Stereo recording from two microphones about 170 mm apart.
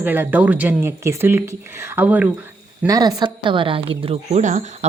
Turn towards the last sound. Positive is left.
turn(degrees=-45)  # may be behind; listen again after turning